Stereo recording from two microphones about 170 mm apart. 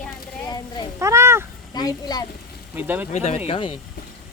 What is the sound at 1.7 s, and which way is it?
Speech, 25° left (ahead or behind).